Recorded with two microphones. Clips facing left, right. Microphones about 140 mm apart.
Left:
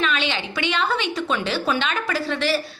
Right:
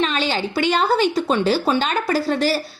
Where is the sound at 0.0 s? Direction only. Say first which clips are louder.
Right 3 dB; 35° right (ahead or behind).